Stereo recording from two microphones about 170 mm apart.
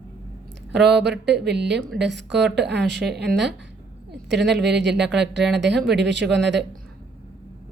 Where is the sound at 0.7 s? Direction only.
85° right.